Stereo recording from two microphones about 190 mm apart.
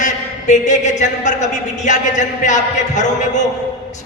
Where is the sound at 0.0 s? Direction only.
40° left (ahead or behind).